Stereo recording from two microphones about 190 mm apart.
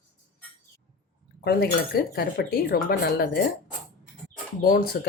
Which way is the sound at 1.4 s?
55° left (ahead or behind).